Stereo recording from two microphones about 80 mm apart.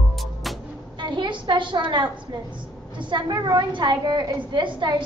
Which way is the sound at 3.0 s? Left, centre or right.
Right.